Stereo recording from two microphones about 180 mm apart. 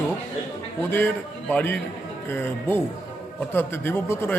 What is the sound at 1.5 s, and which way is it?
Speech, 5° left (ahead or behind).